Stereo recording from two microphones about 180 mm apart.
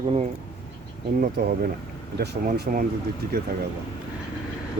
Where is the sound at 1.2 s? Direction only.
55° right (ahead or behind).